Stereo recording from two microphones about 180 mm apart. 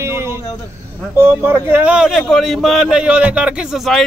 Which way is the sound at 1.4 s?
10° right (ahead or behind).